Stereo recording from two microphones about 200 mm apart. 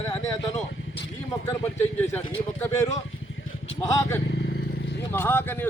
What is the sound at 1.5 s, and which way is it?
Speech, 10° left (ahead or behind).